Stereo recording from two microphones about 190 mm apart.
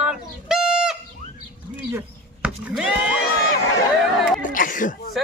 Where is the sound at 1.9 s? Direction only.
10° right (ahead or behind).